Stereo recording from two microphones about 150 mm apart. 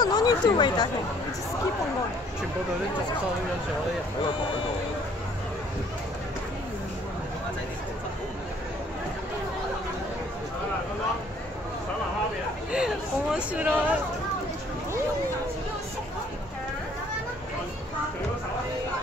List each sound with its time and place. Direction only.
0.0 s speech: 25° left (ahead or behind)
12.7 s speech: 5° right (ahead or behind)